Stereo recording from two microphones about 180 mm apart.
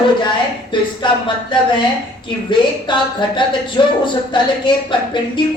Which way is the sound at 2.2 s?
25° left (ahead or behind).